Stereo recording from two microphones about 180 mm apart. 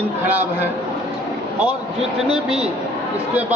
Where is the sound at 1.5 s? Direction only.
5° right (ahead or behind).